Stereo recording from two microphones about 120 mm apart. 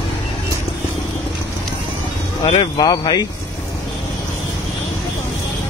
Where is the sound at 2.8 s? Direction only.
35° left (ahead or behind).